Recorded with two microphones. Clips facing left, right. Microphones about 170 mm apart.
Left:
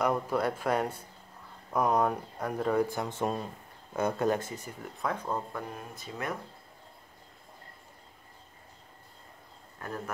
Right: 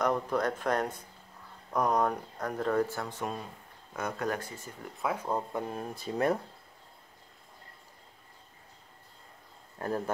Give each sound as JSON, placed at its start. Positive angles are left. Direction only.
{"t": 0.0, "sound": "speech", "side_deg": 5}
{"t": 5.0, "sound": "speech", "side_deg": -10}
{"t": 5.5, "sound": "speech", "side_deg": -25}
{"t": 9.8, "sound": "speech", "side_deg": -35}